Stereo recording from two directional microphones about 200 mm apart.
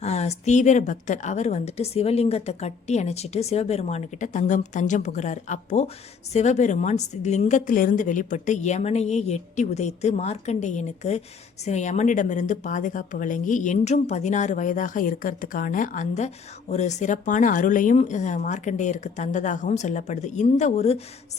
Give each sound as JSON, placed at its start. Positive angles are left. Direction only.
{"t": 0.0, "sound": "a woman's voice", "side_deg": 35}